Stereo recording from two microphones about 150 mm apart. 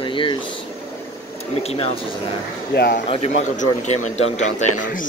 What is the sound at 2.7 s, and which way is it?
Speech, 90° left.